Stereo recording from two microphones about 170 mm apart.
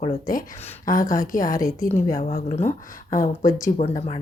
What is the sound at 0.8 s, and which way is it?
A woman's voice, 55° left (ahead or behind).